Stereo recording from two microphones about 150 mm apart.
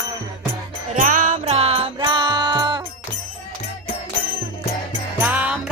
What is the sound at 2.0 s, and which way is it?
Music, 30° right (ahead or behind).